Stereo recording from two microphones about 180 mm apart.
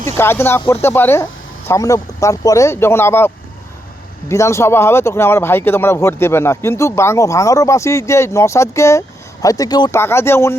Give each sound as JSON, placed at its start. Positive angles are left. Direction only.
{"t": 0.1, "sound": "speech", "side_deg": 15}